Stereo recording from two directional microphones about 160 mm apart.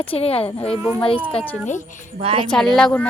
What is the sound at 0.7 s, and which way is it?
Speech, 15° right (ahead or behind).